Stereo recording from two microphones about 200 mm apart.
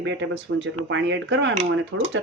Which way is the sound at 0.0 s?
65° right (ahead or behind).